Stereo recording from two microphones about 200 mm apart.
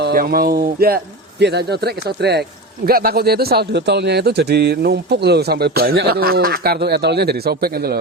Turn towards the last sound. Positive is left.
turn(degrees=-50)  # may be behind; listen again after turning